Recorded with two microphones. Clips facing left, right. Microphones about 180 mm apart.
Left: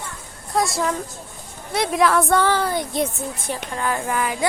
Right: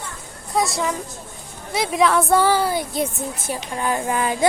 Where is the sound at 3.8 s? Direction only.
20° right (ahead or behind).